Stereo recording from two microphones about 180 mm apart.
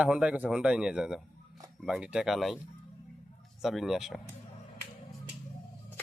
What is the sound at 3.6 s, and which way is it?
Speech, centre (ahead or behind).